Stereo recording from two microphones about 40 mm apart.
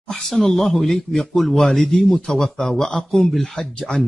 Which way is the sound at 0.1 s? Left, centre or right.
Centre.